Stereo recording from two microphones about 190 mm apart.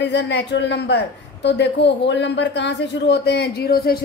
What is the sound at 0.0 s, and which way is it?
A woman's voice, 65° left (ahead or behind).